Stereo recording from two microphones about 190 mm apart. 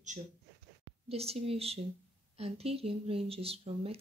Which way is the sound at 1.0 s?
30° right (ahead or behind).